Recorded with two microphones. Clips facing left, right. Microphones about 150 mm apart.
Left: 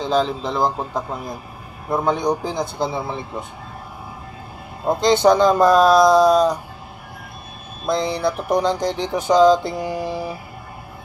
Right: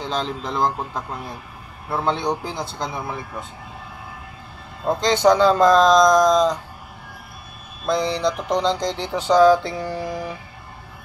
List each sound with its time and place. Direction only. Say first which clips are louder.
0.0 s speech: left 6 dB; 10° left (ahead or behind)
2.9 s speech: left 3 dB; 25° left (ahead or behind)
4.8 s speech: left 2 dB; 15° left (ahead or behind)
8.1 s speech: left 1 dB; 10° left (ahead or behind)